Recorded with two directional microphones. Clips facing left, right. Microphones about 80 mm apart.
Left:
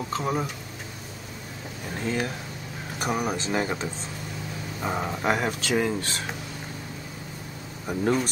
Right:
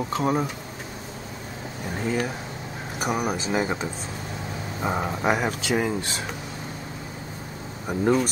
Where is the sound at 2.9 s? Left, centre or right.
Centre.